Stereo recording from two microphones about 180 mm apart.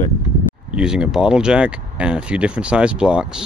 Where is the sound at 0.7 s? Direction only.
5° right (ahead or behind).